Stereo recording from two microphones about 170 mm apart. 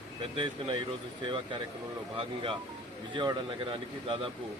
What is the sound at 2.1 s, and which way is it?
Speech, 30° right (ahead or behind).